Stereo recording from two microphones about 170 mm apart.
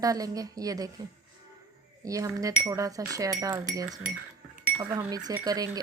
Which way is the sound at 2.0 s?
20° right (ahead or behind).